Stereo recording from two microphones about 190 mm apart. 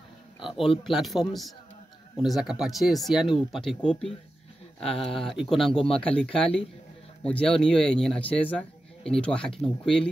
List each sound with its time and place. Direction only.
0.4 s speech: 25° left (ahead or behind)
0.8 s a man's voice: centre (ahead or behind)